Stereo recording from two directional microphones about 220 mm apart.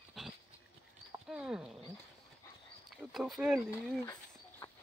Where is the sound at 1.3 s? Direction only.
5° right (ahead or behind).